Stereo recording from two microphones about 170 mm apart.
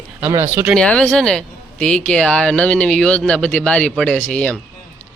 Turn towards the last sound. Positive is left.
turn(degrees=5)  # may be behind; listen again after turning